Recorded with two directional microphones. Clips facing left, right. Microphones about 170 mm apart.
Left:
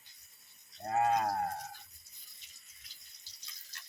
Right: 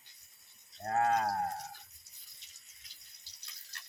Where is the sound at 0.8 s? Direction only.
5° left (ahead or behind).